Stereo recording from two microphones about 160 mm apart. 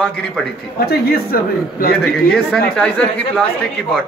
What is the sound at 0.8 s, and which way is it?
Speech, 75° left (ahead or behind).